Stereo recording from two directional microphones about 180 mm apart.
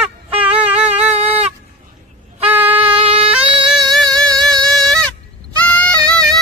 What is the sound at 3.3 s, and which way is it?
Music, 5° right (ahead or behind).